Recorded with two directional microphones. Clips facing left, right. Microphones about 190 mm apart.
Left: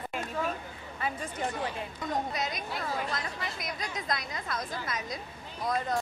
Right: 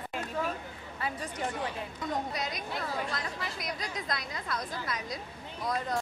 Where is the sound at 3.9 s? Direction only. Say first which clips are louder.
Left 2 dB; 20° left (ahead or behind).